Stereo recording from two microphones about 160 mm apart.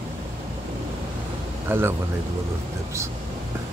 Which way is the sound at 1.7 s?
15° right (ahead or behind).